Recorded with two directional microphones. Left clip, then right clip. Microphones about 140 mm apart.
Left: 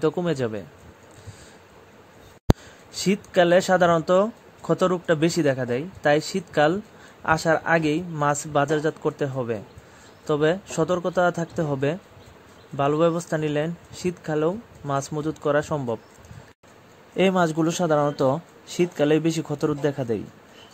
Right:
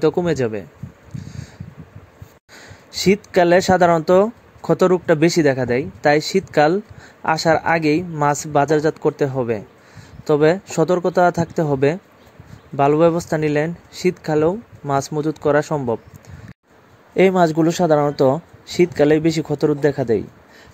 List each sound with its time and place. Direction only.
0.0 s speech: 30° right (ahead or behind)
2.6 s speech: 30° right (ahead or behind)
15.7 s speech: 15° right (ahead or behind)
17.1 s speech: 35° right (ahead or behind)